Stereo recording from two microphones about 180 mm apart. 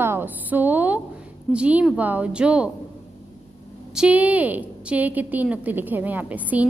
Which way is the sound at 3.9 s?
5° right (ahead or behind).